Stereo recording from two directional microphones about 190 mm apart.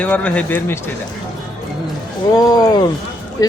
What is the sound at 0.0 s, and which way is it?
Speech, 5° left (ahead or behind).